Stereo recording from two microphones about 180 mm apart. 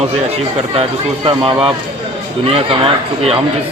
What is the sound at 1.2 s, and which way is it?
Speech, 30° right (ahead or behind).